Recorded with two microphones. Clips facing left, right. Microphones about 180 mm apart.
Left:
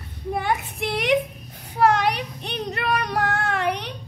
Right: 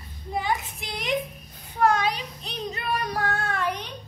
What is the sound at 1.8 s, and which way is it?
Child singing, 70° left (ahead or behind).